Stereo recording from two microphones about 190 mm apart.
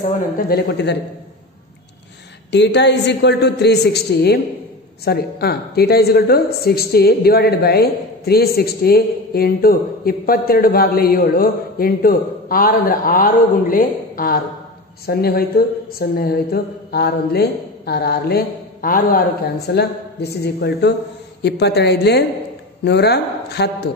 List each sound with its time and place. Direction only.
0.0 s speech: 50° left (ahead or behind)
2.5 s a woman's voice: 65° left (ahead or behind)